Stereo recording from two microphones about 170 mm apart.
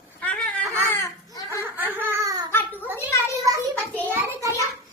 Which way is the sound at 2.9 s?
15° left (ahead or behind).